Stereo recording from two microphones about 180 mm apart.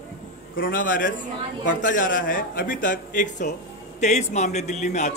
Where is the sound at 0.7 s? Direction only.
50° left (ahead or behind).